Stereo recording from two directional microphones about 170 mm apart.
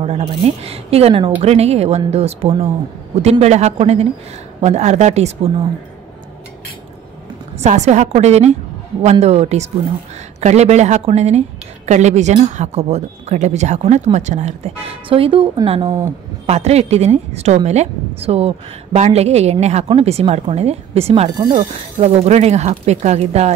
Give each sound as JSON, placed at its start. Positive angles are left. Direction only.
{"t": 0.0, "sound": "speech", "side_deg": -40}
{"t": 7.6, "sound": "speech", "side_deg": -40}